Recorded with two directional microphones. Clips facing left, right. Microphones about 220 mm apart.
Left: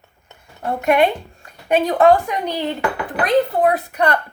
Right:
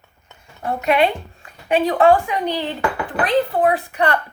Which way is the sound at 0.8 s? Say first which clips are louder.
Left 2 dB; 45° left (ahead or behind).